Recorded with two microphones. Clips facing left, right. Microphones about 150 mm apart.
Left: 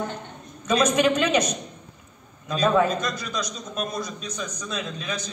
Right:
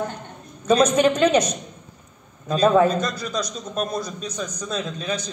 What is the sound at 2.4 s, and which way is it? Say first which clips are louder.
A man's voice: right 4 dB; 35° right (ahead or behind).